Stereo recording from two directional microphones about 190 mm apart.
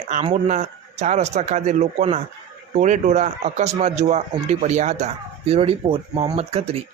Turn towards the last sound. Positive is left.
turn(degrees=-30)  # may be behind; listen again after turning